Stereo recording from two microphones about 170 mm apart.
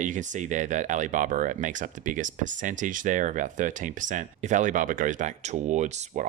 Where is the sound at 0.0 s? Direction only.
45° right (ahead or behind).